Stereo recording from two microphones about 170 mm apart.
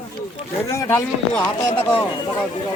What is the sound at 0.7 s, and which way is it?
Speech, 15° left (ahead or behind).